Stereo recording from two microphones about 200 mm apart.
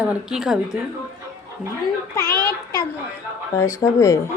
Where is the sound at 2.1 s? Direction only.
15° left (ahead or behind).